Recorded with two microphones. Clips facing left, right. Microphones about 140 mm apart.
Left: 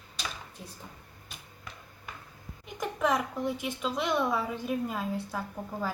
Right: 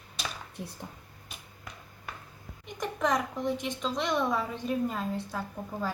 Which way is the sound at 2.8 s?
5° left (ahead or behind).